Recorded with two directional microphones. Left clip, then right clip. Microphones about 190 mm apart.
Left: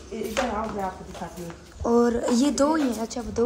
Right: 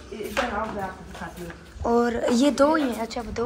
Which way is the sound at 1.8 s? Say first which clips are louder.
Even; 15° left (ahead or behind).